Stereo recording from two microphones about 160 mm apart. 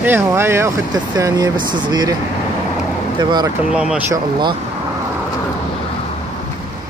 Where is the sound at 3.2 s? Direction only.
25° right (ahead or behind).